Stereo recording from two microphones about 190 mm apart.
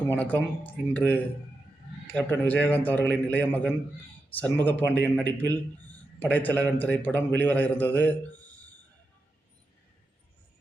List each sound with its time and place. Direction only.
0.0 s a man's voice: 10° left (ahead or behind)